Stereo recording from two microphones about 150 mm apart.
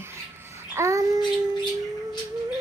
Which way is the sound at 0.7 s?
20° right (ahead or behind).